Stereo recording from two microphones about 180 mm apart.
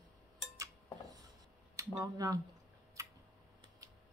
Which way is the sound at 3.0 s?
15° right (ahead or behind).